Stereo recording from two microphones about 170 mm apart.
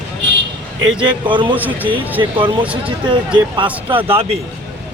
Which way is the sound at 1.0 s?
30° right (ahead or behind).